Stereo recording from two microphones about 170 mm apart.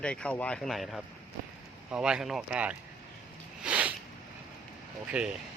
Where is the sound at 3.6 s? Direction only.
5° right (ahead or behind).